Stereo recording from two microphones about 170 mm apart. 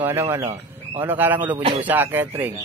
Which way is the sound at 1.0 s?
10° right (ahead or behind).